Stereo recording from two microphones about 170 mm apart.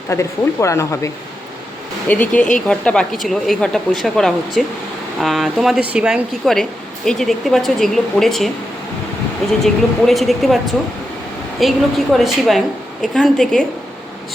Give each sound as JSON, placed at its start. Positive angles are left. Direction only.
{"t": 0.1, "sound": "speech", "side_deg": 15}
{"t": 9.5, "sound": "speech", "side_deg": 0}
{"t": 11.6, "sound": "speech", "side_deg": 0}